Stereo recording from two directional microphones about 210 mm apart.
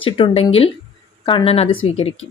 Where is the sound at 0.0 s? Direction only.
25° left (ahead or behind).